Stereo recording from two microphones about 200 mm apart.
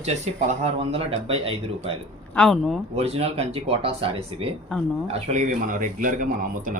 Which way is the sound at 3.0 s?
30° right (ahead or behind).